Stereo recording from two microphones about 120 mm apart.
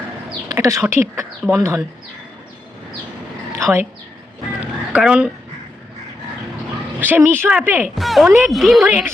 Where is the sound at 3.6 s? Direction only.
25° right (ahead or behind).